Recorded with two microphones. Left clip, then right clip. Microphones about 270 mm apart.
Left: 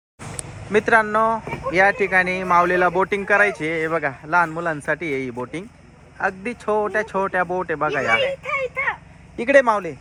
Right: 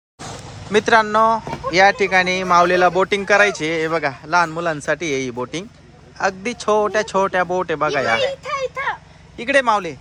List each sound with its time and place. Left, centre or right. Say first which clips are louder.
0.7 s speech: right 2 dB; centre
9.4 s speech: left 1 dB; centre